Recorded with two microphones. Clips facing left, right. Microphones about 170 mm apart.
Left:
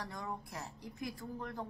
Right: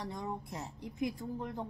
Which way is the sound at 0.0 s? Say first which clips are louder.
Right 3 dB; 20° right (ahead or behind).